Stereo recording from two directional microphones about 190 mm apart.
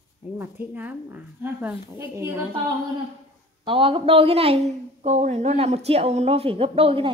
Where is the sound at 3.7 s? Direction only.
30° right (ahead or behind).